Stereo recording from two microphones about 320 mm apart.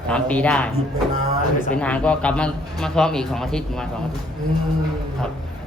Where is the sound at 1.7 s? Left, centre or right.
Centre.